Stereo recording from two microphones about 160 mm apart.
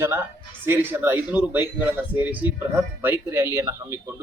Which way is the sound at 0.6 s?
15° right (ahead or behind).